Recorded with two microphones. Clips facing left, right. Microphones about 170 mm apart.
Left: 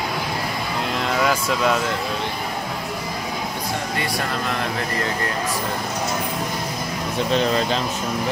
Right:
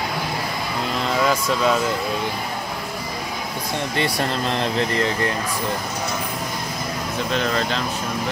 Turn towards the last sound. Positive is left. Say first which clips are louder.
# left 2 dB
turn(degrees=15)  # may be behind; listen again after turning